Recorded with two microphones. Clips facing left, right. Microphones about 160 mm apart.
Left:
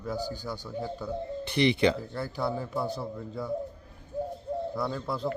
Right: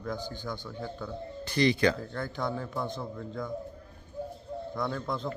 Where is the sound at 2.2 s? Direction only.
10° left (ahead or behind).